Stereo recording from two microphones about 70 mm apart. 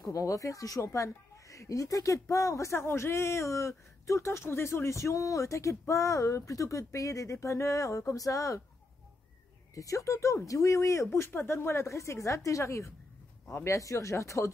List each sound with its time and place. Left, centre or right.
0.1 s a woman's voice: left
9.8 s a woman's voice: left